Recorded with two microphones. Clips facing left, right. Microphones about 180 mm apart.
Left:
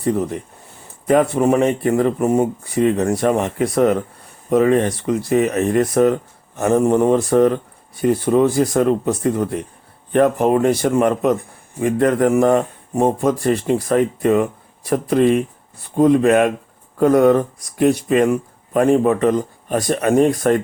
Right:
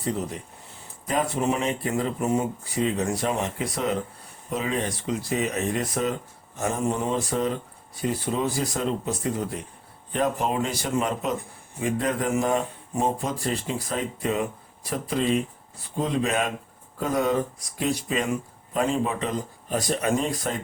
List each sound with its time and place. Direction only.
0.0 s speech: 55° left (ahead or behind)